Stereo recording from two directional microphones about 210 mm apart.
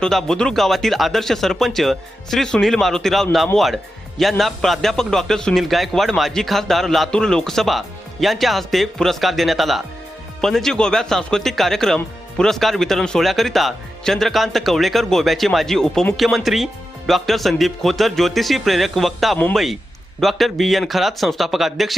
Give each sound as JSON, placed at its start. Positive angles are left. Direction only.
{"t": 0.0, "sound": "speech", "side_deg": 0}